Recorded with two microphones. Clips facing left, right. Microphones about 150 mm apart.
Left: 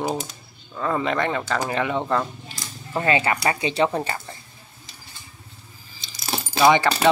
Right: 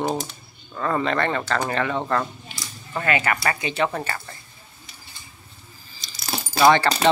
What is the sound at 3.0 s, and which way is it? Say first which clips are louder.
Speech: left 2 dB; 25° left (ahead or behind).